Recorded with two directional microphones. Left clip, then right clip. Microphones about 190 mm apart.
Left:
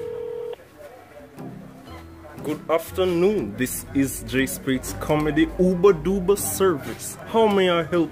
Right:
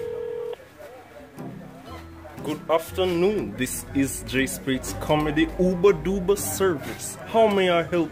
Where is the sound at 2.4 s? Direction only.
20° left (ahead or behind).